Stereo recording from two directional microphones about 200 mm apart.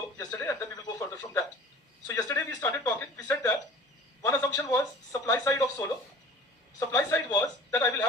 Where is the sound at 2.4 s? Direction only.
10° left (ahead or behind).